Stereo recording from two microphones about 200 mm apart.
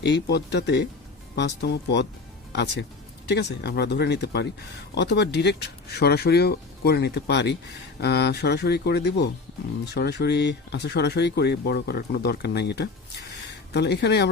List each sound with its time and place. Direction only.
0.0 s speech: 55° left (ahead or behind)
3.2 s speech: 55° left (ahead or behind)